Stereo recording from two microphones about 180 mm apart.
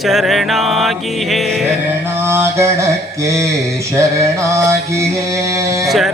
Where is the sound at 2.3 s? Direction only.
15° right (ahead or behind).